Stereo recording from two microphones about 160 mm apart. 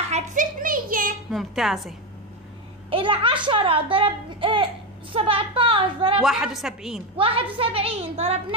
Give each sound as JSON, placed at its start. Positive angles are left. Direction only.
{"t": 0.1, "sound": "a sound", "side_deg": -55}
{"t": 1.3, "sound": "a woman's voice", "side_deg": 0}
{"t": 2.9, "sound": "a child's voice", "side_deg": -35}
{"t": 6.2, "sound": "a woman's voice", "side_deg": 0}
{"t": 7.2, "sound": "a child's voice", "side_deg": -35}